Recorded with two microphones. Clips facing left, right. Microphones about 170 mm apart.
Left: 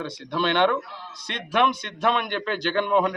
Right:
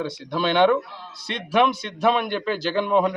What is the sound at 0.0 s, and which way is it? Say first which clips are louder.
A man's voice: right 2 dB; 5° right (ahead or behind).